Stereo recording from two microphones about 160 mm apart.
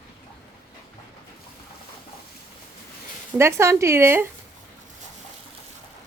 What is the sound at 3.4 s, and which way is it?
Speech, 15° right (ahead or behind).